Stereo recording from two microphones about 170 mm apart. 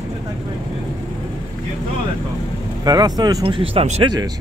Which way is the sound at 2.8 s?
25° right (ahead or behind).